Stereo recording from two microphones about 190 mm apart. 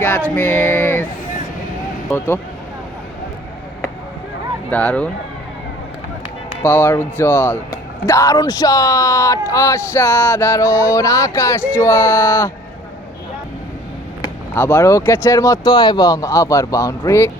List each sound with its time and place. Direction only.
0.3 s a sound: 10° left (ahead or behind)
2.1 s a man's voice: 10° left (ahead or behind)
4.7 s a man's voice: 5° left (ahead or behind)
6.6 s a man's voice: 10° left (ahead or behind)
14.2 s a man's voice: 10° left (ahead or behind)